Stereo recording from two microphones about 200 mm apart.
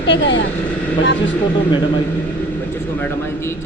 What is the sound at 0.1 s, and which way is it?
Speech, 65° left (ahead or behind).